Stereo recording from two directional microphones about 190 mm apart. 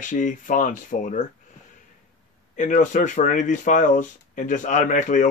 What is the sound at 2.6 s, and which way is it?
Speech, 40° left (ahead or behind).